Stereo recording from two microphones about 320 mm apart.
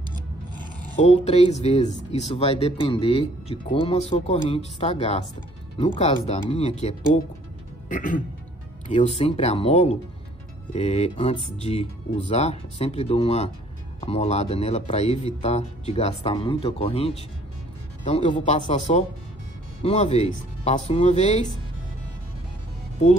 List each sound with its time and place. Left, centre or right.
0.9 s speech: left